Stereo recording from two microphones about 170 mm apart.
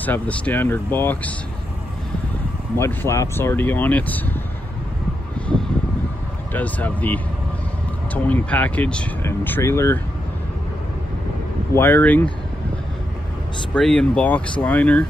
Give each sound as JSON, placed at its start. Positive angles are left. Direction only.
{"t": 0.0, "sound": "speech", "side_deg": 10}
{"t": 2.8, "sound": "speech", "side_deg": 15}
{"t": 6.5, "sound": "speech", "side_deg": 10}
{"t": 11.7, "sound": "speech", "side_deg": 15}
{"t": 13.7, "sound": "speech", "side_deg": 5}